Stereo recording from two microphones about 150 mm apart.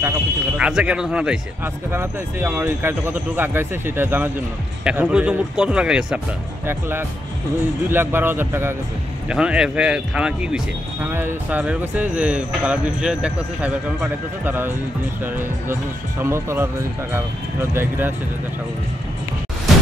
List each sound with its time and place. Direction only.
0.6 s speech: 5° right (ahead or behind)
6.6 s speech: 15° right (ahead or behind)